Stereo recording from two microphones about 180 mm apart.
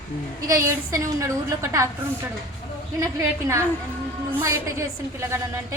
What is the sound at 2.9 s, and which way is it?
A woman's voice, 15° right (ahead or behind).